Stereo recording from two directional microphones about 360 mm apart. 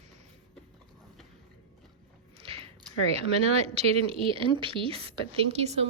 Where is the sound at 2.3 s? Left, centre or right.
Centre.